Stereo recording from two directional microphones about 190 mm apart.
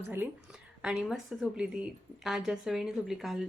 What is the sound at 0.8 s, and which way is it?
A woman's voice, 5° right (ahead or behind).